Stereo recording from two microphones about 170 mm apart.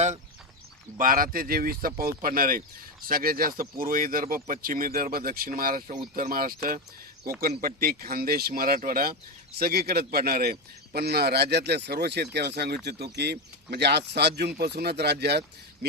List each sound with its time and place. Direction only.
0.9 s speech: 55° right (ahead or behind); by 15.9 s 75° right (ahead or behind)